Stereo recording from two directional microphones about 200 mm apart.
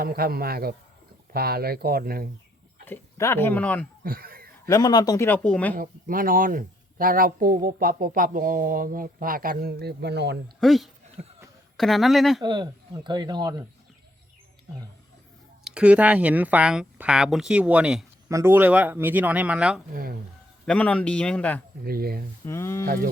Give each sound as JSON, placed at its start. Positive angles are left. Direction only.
{"t": 0.0, "sound": "speech", "side_deg": -50}
{"t": 2.8, "sound": "speech", "side_deg": 10}
{"t": 4.0, "sound": "speech", "side_deg": -45}
{"t": 4.6, "sound": "speech", "side_deg": 20}
{"t": 5.7, "sound": "speech", "side_deg": -45}
{"t": 10.6, "sound": "speech", "side_deg": 0}
{"t": 12.4, "sound": "speech", "side_deg": -20}
{"t": 15.6, "sound": "speech", "side_deg": -5}
{"t": 19.9, "sound": "speech", "side_deg": -45}
{"t": 20.7, "sound": "speech", "side_deg": 5}
{"t": 21.8, "sound": "speech", "side_deg": -50}
{"t": 22.4, "sound": "speech", "side_deg": 15}